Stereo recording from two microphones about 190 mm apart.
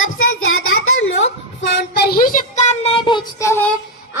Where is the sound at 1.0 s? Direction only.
70° left (ahead or behind); by 3.5 s 25° left (ahead or behind).